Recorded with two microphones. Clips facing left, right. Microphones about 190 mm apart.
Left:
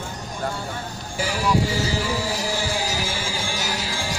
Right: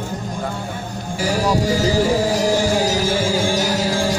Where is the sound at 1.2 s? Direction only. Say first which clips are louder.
Right 4 dB; 40° right (ahead or behind).